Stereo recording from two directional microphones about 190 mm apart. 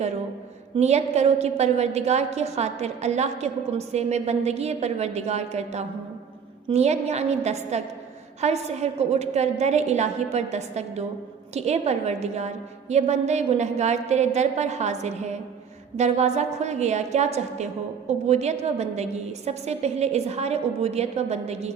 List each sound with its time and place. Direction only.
0.8 s a woman's voice: 35° right (ahead or behind)